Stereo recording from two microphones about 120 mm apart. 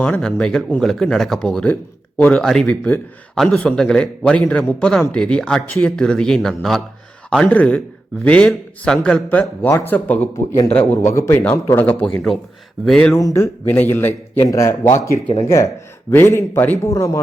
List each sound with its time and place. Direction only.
0.0 s a man's voice: 10° left (ahead or behind)
13.1 s a man's voice: 25° left (ahead or behind)